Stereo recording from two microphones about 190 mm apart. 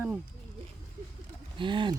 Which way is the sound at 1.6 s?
25° right (ahead or behind).